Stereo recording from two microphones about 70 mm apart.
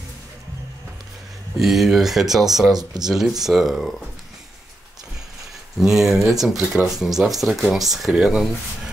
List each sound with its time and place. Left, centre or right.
1.6 s speech: centre
5.8 s speech: centre